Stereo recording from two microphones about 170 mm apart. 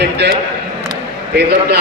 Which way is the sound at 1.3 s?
80° right.